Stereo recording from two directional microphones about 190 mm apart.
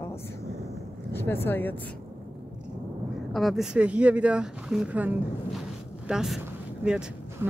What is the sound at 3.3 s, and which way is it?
Speech, centre (ahead or behind).